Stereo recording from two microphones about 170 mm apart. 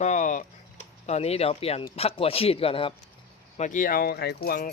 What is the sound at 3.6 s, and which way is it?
Speech, 50° left (ahead or behind).